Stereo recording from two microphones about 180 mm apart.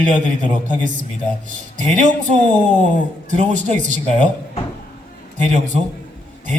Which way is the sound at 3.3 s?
45° right (ahead or behind).